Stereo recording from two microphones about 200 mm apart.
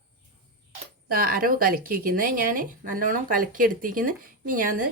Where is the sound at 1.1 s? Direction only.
45° right (ahead or behind).